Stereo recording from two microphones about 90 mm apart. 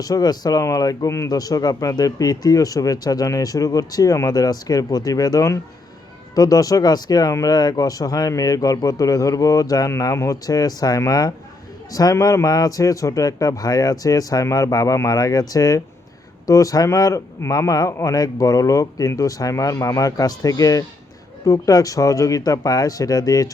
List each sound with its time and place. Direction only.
0.0 s speech: 45° left (ahead or behind)